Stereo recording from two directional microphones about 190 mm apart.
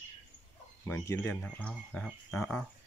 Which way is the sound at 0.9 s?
15° left (ahead or behind).